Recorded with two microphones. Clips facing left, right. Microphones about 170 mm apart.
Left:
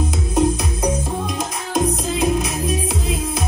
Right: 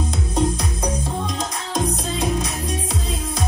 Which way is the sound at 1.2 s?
5° left (ahead or behind).